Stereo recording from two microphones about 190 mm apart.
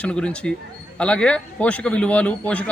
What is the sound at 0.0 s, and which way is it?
Speech, 5° left (ahead or behind).